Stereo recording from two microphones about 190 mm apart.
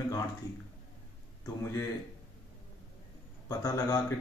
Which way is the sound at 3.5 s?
15° left (ahead or behind).